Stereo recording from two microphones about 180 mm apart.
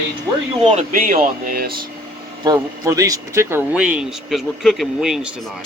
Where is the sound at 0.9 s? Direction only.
50° right (ahead or behind).